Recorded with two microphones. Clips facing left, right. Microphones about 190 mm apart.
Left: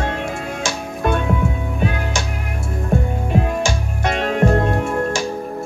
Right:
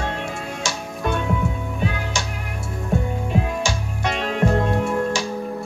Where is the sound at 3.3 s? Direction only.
50° left (ahead or behind).